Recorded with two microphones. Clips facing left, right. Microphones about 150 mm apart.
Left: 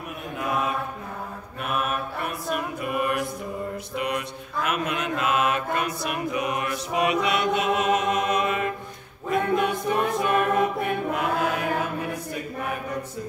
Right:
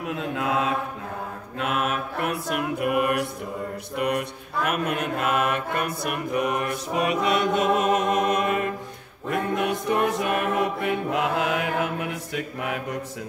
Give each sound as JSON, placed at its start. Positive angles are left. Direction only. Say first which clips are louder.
{"t": 0.1, "sound": "chant", "louder": "right 3 dB", "side_deg": -90}
{"t": 1.6, "sound": "mantra", "louder": "right 2 dB", "side_deg": -90}
{"t": 3.9, "sound": "mantra", "louder": "right 5 dB", "side_deg": -55}
{"t": 9.3, "sound": "music", "louder": "left 2 dB", "side_deg": -65}